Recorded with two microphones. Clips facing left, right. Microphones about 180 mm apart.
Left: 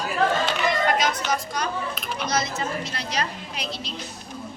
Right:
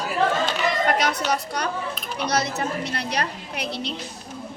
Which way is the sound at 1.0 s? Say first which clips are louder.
Right 1 dB; 65° right (ahead or behind).